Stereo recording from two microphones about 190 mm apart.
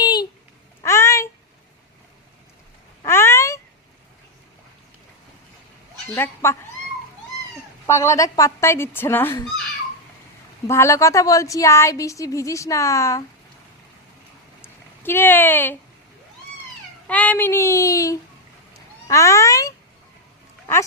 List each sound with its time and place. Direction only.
0.0 s babbling: 20° left (ahead or behind)
0.8 s a sound: 15° left (ahead or behind)
3.1 s cat: 15° left (ahead or behind)
6.1 s a woman's voice: 15° left (ahead or behind)
7.9 s a woman's voice: 15° left (ahead or behind)
10.7 s a woman's voice: 15° left (ahead or behind)
14.6 s a sound: 10° left (ahead or behind)
17.1 s a woman's voice: 10° left (ahead or behind)